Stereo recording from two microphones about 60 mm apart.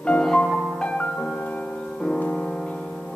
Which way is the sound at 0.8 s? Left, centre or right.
Centre.